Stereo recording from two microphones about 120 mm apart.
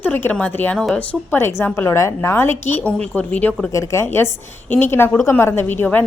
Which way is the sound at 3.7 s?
25° left (ahead or behind).